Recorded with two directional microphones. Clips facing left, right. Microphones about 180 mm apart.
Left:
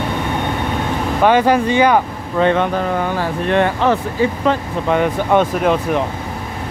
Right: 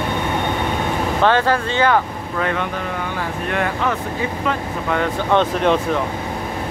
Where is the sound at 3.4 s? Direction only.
30° left (ahead or behind).